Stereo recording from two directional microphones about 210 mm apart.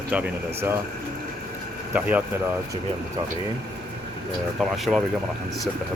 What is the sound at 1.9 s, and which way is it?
Speech, 10° right (ahead or behind).